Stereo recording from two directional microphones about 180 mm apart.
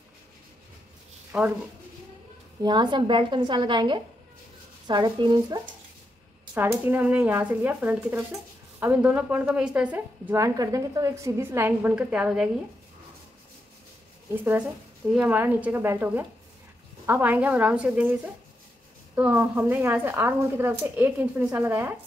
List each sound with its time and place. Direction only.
1.3 s a woman's voice: 5° right (ahead or behind)
2.6 s a woman's voice: 25° right (ahead or behind)
6.5 s a woman's voice: 10° right (ahead or behind)
14.3 s a woman's voice: 10° right (ahead or behind)